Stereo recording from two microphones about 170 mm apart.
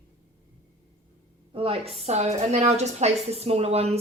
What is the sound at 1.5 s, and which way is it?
A woman's voice, 35° right (ahead or behind).